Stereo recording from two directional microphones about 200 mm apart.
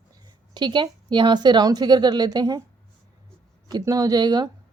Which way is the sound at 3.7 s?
20° right (ahead or behind).